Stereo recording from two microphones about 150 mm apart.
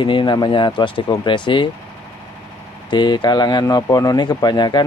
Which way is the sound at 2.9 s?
30° left (ahead or behind).